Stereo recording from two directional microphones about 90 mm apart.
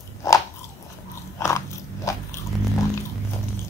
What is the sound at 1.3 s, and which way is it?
Biting, 35° left (ahead or behind).